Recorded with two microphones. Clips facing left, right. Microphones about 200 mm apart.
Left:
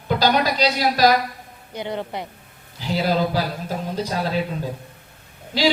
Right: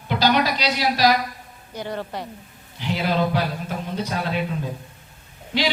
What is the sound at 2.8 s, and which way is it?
Speech, 35° left (ahead or behind).